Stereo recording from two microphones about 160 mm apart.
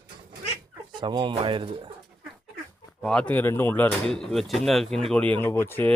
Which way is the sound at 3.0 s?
5° left (ahead or behind).